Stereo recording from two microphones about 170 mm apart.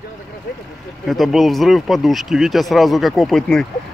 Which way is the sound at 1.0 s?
Centre (ahead or behind).